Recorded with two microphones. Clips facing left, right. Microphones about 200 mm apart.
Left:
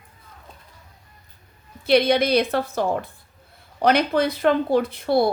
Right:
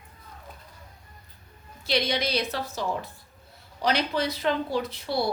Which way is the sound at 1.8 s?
55° left (ahead or behind).